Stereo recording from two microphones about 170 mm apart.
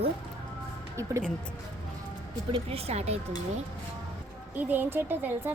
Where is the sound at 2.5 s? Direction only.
35° right (ahead or behind).